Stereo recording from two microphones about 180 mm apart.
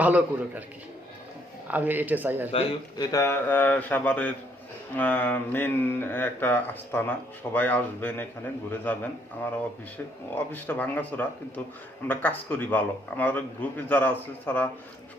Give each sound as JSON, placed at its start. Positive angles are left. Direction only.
{"t": 0.0, "sound": "speech", "side_deg": -10}
{"t": 1.6, "sound": "speech", "side_deg": -10}
{"t": 2.5, "sound": "a man's voice", "side_deg": 30}
{"t": 3.1, "sound": "speech", "side_deg": 15}
{"t": 10.2, "sound": "speech", "side_deg": 10}